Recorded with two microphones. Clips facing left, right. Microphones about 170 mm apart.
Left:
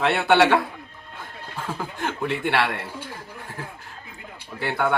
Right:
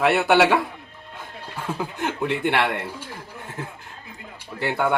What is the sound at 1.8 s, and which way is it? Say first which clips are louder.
Speech: right 2 dB; 15° right (ahead or behind).